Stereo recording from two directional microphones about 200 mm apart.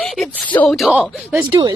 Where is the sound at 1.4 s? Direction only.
25° right (ahead or behind).